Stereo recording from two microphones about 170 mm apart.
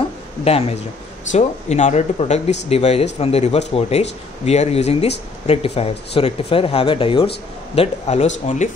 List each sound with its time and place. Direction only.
0.5 s speech: 35° left (ahead or behind)